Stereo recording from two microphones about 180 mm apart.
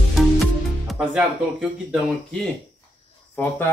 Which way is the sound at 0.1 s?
Centre (ahead or behind).